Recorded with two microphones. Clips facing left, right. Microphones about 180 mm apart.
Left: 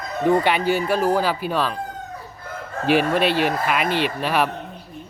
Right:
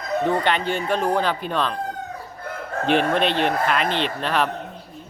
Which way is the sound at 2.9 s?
5° left (ahead or behind).